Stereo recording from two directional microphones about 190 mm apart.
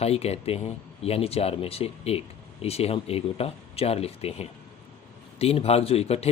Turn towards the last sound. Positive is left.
turn(degrees=30)  # may be behind; listen again after turning